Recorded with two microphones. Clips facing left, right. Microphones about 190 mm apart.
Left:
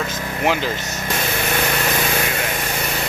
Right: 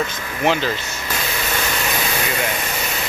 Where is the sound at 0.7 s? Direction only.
45° left (ahead or behind).